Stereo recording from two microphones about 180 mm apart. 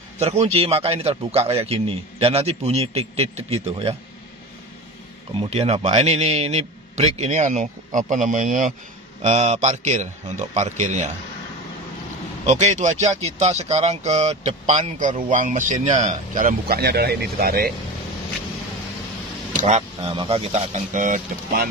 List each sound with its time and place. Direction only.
0.2 s a man's voice: 35° right (ahead or behind)
5.4 s a man's voice: 35° right (ahead or behind)
12.4 s a man's voice: 40° right (ahead or behind); by 17.7 s 55° right (ahead or behind)
19.6 s a man's voice: 35° right (ahead or behind)